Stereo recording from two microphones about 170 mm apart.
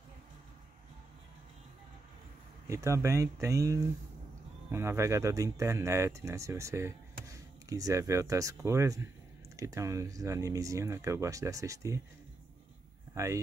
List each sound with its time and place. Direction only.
2.7 s speech: 15° right (ahead or behind)
13.1 s speech: 15° right (ahead or behind)